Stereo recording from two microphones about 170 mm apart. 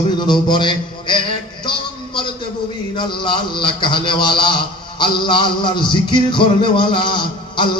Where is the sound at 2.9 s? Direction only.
30° left (ahead or behind).